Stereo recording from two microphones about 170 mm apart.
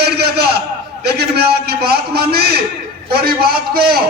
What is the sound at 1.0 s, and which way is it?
A man's voice, 70° right (ahead or behind).